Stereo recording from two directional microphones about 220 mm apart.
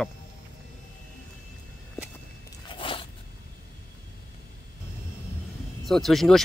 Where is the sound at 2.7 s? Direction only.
25° left (ahead or behind).